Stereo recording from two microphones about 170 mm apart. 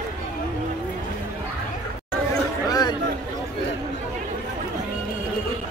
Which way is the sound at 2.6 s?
25° left (ahead or behind).